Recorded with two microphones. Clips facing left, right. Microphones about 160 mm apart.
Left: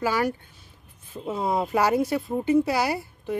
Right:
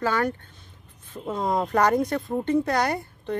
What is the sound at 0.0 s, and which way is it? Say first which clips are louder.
Speech: even; 10° left (ahead or behind).